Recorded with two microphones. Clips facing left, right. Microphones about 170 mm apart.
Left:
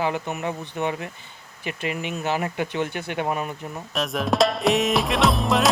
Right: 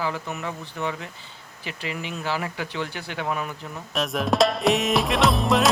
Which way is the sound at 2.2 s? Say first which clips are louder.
Left 3 dB; 20° left (ahead or behind).